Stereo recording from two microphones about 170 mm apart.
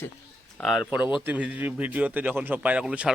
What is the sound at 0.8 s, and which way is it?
A man's voice, 10° right (ahead or behind).